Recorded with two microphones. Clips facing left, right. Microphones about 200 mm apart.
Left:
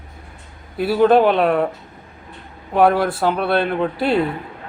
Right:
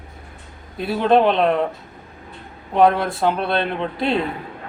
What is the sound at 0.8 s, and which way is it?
Speech, 5° left (ahead or behind).